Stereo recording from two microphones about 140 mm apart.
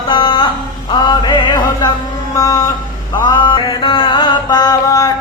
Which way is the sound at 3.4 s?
35° left (ahead or behind).